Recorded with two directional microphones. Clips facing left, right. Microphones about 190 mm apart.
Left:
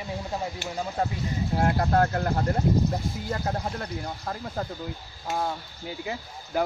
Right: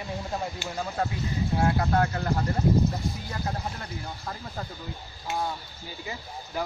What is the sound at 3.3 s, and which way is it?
Speech, 50° left (ahead or behind).